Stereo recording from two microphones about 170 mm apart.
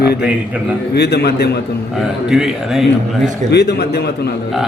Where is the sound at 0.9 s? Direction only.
75° left (ahead or behind).